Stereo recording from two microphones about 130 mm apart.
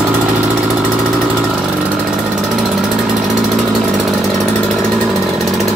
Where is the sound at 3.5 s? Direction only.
Centre (ahead or behind).